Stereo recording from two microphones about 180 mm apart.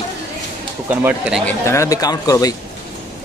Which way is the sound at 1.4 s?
15° left (ahead or behind).